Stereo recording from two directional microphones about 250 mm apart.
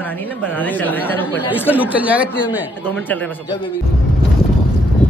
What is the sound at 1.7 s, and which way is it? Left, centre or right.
A man's voice, centre.